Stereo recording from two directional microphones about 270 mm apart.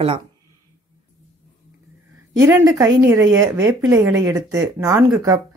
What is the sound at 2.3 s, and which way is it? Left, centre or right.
A woman's voice, centre.